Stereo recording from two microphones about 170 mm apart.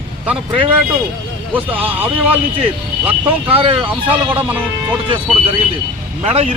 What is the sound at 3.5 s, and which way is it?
Speech, 35° right (ahead or behind).